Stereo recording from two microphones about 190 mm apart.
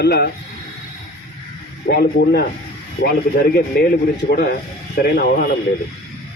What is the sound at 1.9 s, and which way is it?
Speech, 55° left (ahead or behind).